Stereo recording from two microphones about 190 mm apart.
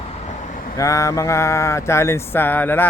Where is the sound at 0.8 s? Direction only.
15° left (ahead or behind).